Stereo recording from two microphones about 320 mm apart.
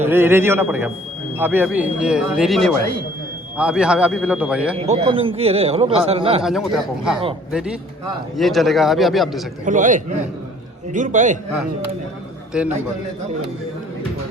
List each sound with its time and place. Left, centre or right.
0.0 s a man's voice: centre
4.9 s a man's voice: centre
6.4 s speech: centre
9.6 s a man's voice: right
12.5 s speech: centre